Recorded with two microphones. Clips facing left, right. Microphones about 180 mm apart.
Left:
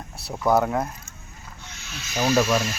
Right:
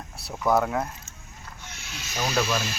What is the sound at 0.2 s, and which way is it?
Speech, centre (ahead or behind).